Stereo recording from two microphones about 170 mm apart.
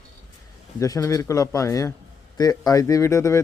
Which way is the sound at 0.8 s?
20° left (ahead or behind).